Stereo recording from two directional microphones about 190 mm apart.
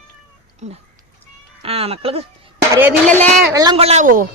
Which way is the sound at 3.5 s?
20° right (ahead or behind).